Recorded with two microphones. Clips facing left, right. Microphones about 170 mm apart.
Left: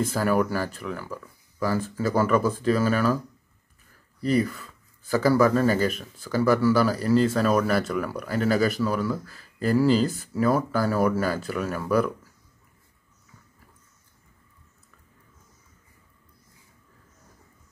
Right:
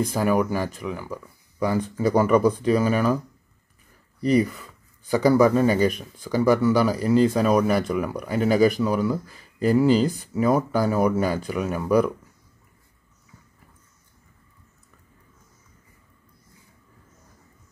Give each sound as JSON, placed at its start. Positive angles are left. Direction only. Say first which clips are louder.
{"t": 0.1, "sound": "speech", "louder": "right 2 dB", "side_deg": -15}
{"t": 4.4, "sound": "speech", "louder": "right 3 dB", "side_deg": -10}